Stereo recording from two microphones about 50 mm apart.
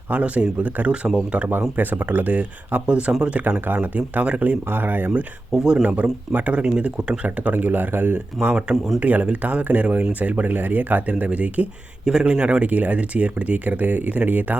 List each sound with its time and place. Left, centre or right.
0.1 s speech: right
1.7 s speech: right
3.4 s speech: right
5.5 s speech: centre
5.8 s speech: right
7.5 s speech: right
9.0 s speech: right
12.0 s speech: centre; by 14.6 s right